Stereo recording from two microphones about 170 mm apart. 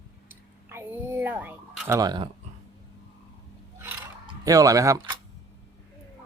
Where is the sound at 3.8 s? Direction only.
10° right (ahead or behind).